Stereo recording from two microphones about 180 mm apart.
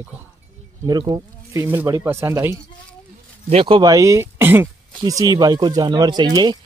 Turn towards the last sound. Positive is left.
turn(degrees=-25)  # may be behind; listen again after turning